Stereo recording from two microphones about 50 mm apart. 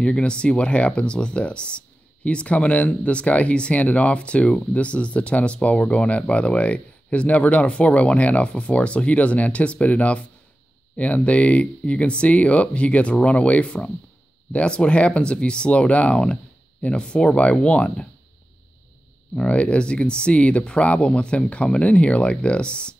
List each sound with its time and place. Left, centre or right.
0.0 s speech: left
19.3 s speech: left